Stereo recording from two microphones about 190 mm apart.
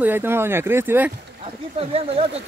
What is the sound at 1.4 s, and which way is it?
Speech, 30° right (ahead or behind).